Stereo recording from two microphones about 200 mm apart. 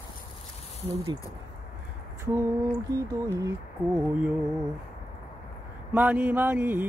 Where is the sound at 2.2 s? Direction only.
15° right (ahead or behind).